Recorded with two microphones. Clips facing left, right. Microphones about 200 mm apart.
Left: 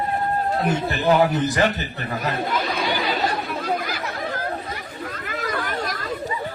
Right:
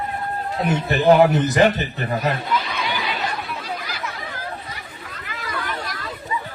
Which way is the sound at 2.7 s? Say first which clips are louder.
Left 3 dB; 40° left (ahead or behind).